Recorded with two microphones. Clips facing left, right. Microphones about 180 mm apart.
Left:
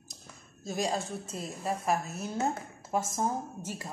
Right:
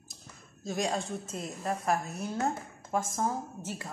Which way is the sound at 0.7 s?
Centre (ahead or behind).